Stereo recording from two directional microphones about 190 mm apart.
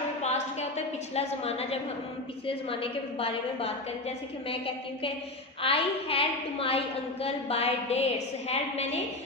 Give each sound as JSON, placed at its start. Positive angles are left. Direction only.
{"t": 1.1, "sound": "a woman's voice", "side_deg": 35}